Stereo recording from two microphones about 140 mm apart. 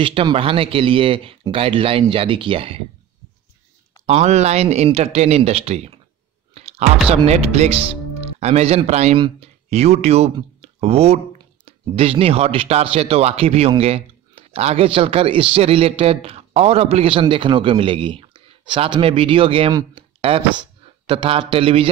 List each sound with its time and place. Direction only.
0.0 s speech: 40° right (ahead or behind)
4.0 s speech: 50° right (ahead or behind)
6.5 s clicking: 45° right (ahead or behind)
7.2 s speech: 50° right (ahead or behind)